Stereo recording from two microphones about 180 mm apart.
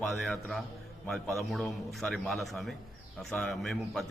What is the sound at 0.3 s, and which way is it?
A man's voice, centre (ahead or behind).